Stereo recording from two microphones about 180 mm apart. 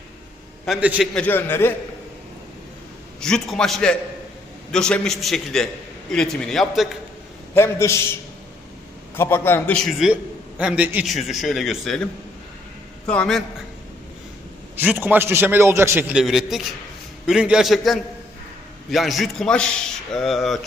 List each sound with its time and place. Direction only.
0.6 s a man's voice: 5° right (ahead or behind)
1.1 s a man's voice: 10° left (ahead or behind)
3.2 s a man's voice: 5° left (ahead or behind)
7.5 s a man's voice: 15° left (ahead or behind)
9.1 s a man's voice: 10° left (ahead or behind)
13.1 s a man's voice: 5° left (ahead or behind)
14.8 s a man's voice: 10° right (ahead or behind)